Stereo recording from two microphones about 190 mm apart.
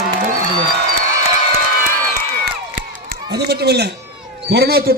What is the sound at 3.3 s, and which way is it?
A man's voice, 60° right (ahead or behind).